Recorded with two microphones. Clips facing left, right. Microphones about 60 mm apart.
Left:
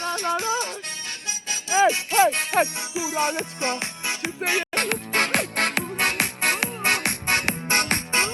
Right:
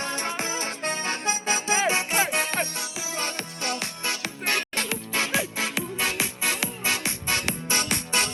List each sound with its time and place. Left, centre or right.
0.0 s music: right
2.1 s music: centre
2.6 s music: centre
4.7 s music: left